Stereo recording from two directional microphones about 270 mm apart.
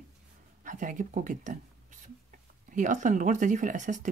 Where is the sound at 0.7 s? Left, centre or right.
Right.